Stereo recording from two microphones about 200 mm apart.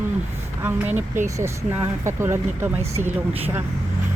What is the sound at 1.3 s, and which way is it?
Speech, 15° right (ahead or behind).